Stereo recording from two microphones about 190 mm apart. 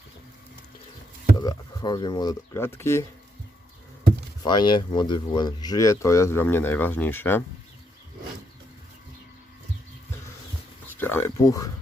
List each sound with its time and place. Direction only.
1.4 s speech: 20° left (ahead or behind)
4.4 s speech: 25° left (ahead or behind)
11.0 s speech: 10° left (ahead or behind)